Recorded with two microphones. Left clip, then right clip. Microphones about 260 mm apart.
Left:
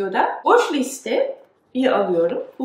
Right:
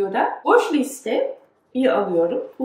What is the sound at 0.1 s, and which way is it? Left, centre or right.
A woman's voice, centre.